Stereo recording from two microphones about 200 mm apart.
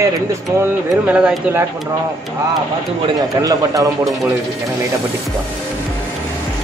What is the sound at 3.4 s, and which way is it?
Speech, 15° right (ahead or behind).